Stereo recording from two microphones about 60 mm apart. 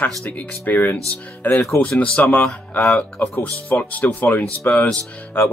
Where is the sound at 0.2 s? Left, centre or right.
Left.